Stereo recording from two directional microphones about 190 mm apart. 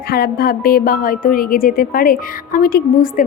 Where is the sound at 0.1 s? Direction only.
50° left (ahead or behind).